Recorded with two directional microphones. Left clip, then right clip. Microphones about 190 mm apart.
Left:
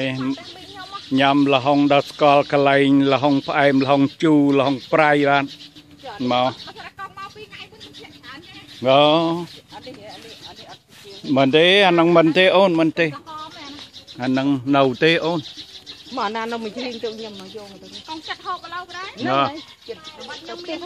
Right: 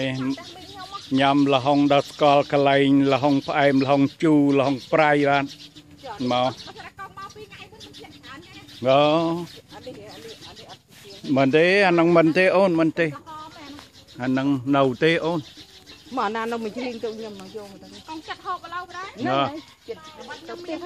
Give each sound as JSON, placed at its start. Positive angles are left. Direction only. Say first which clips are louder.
{"t": 0.0, "sound": "speech", "louder": "left 3 dB", "side_deg": 5}
{"t": 8.8, "sound": "speech", "louder": "left 3 dB", "side_deg": 15}
{"t": 11.2, "sound": "speech", "louder": "left 3 dB", "side_deg": 10}
{"t": 16.2, "sound": "speech", "louder": "left 1 dB", "side_deg": -35}
{"t": 17.0, "sound": "speech", "louder": "left 2 dB", "side_deg": -20}
{"t": 18.0, "sound": "speech", "louder": "left 3 dB", "side_deg": 10}